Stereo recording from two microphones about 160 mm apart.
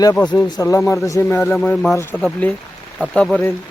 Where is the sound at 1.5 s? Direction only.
5° left (ahead or behind).